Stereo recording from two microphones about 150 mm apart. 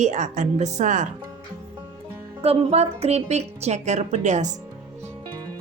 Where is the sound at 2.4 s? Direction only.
45° right (ahead or behind).